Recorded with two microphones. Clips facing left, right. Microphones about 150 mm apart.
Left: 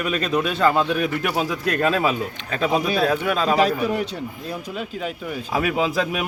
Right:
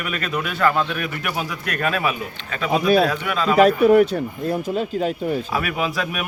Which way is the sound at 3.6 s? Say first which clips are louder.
Right 7 dB; 60° right (ahead or behind).